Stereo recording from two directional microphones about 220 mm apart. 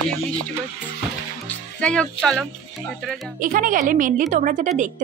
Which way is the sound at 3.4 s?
40° right (ahead or behind).